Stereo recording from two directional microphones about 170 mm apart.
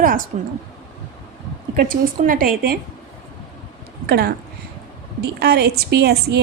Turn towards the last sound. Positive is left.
turn(degrees=-70)  # may be behind; listen again after turning